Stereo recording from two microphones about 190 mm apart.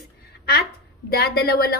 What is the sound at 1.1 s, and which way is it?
Speech, 55° left (ahead or behind).